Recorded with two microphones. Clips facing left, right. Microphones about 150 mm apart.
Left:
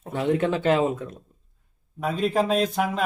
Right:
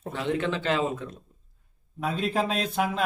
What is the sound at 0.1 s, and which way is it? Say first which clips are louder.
Speech: left 5 dB; 40° left (ahead or behind).